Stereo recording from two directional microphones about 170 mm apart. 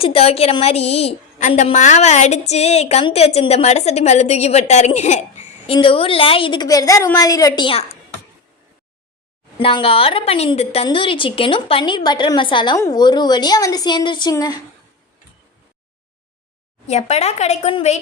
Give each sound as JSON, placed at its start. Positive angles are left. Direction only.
{"t": 0.0, "sound": "a woman's voice", "side_deg": 35}
{"t": 5.7, "sound": "a woman's voice", "side_deg": 30}
{"t": 9.6, "sound": "a woman's voice", "side_deg": 30}
{"t": 16.8, "sound": "a woman's voice", "side_deg": 40}